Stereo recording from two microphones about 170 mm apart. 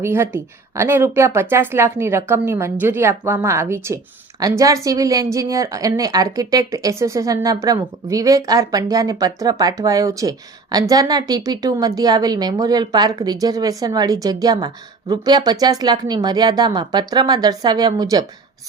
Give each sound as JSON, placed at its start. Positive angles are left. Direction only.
{"t": 0.0, "sound": "speech", "side_deg": -15}